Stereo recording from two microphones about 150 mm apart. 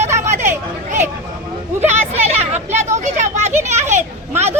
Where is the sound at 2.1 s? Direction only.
45° right (ahead or behind).